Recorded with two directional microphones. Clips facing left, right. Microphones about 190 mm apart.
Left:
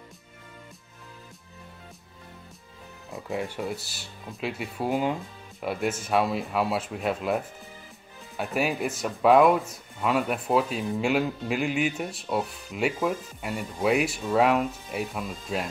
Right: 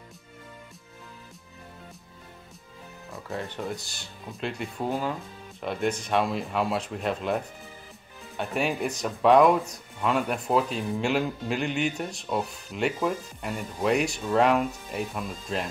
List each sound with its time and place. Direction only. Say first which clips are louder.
3.1 s speech: left 3 dB; 15° left (ahead or behind)